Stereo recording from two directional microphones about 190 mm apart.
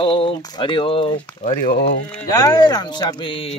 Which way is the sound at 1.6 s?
60° left (ahead or behind).